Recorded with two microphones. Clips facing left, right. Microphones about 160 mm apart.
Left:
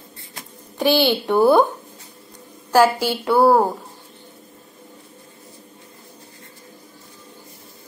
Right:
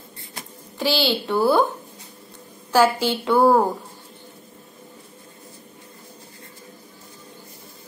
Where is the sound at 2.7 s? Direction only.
10° left (ahead or behind).